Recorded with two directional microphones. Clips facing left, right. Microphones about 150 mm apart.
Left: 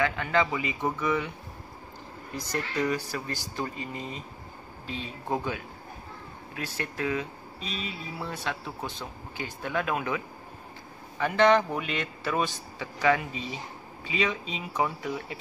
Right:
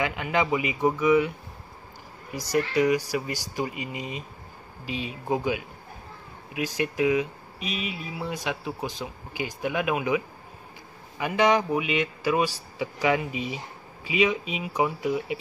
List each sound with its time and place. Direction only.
0.0 s speech: 15° right (ahead or behind)
2.3 s speech: 10° right (ahead or behind)